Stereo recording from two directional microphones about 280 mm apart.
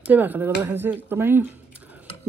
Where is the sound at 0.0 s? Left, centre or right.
Centre.